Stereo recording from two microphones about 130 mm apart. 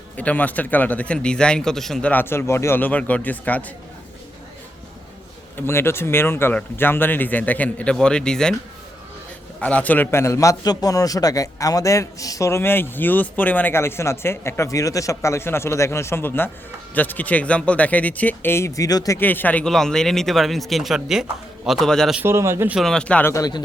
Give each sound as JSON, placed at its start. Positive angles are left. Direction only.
{"t": 0.2, "sound": "speech", "side_deg": 10}
{"t": 5.5, "sound": "speech", "side_deg": 20}
{"t": 9.6, "sound": "a man's voice", "side_deg": 10}
{"t": 19.2, "sound": "speech", "side_deg": 15}
{"t": 22.1, "sound": "a man's voice", "side_deg": -15}
{"t": 22.8, "sound": "speech", "side_deg": 5}
{"t": 23.3, "sound": "speech", "side_deg": 30}